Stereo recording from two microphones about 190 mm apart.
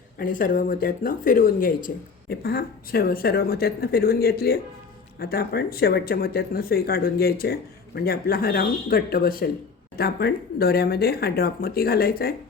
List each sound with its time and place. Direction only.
0.2 s speech: 45° left (ahead or behind)